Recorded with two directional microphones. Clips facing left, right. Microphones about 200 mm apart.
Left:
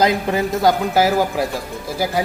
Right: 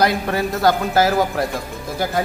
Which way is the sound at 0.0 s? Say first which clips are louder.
Left 1 dB; 15° left (ahead or behind).